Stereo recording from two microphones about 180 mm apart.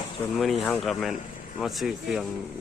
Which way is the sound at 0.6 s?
Centre (ahead or behind).